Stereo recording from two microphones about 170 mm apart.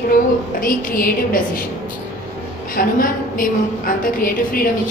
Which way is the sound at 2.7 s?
55° left (ahead or behind).